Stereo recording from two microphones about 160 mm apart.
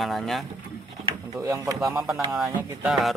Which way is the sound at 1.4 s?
20° right (ahead or behind).